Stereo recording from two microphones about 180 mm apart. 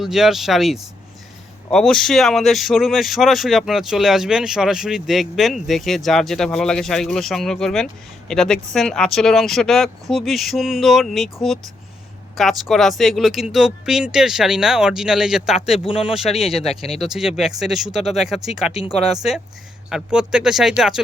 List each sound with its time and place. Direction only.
0.0 s speech: centre (ahead or behind)
12.4 s speech: centre (ahead or behind)
19.9 s speech: 5° right (ahead or behind)